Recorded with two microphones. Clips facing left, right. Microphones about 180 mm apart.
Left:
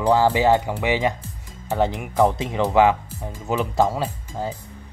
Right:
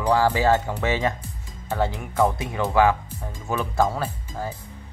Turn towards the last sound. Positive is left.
turn(degrees=15)  # may be behind; listen again after turning